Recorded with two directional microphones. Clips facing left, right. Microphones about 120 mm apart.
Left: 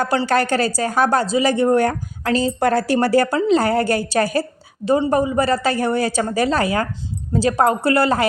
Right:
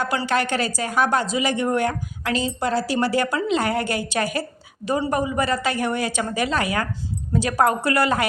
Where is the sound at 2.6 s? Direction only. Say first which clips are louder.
Left 4 dB; 55° left (ahead or behind).